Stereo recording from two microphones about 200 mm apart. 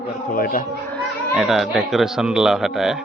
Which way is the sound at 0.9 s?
Centre (ahead or behind).